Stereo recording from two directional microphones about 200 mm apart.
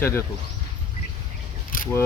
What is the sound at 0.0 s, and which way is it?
Speech, 15° left (ahead or behind).